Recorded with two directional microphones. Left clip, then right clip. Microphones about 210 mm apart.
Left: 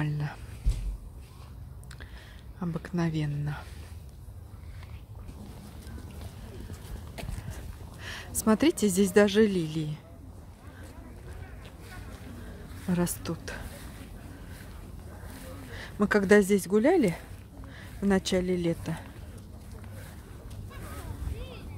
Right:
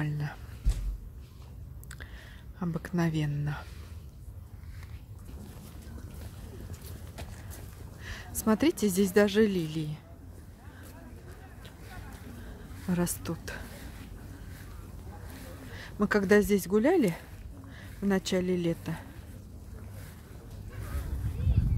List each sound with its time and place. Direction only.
0.0 s a sound: centre (ahead or behind)
2.6 s speech: 5° right (ahead or behind)
7.2 s a sound: 25° left (ahead or behind)
8.0 s speech: 10° left (ahead or behind)
12.8 s speech: centre (ahead or behind)
15.3 s speech: 5° left (ahead or behind)